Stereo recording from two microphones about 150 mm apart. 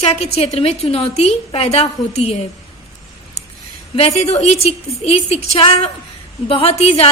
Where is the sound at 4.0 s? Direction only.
45° left (ahead or behind).